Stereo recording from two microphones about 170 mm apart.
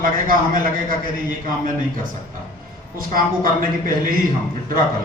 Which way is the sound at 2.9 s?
55° right (ahead or behind).